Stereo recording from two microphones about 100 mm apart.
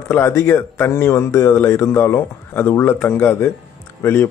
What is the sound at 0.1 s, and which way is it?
Speech, 30° left (ahead or behind).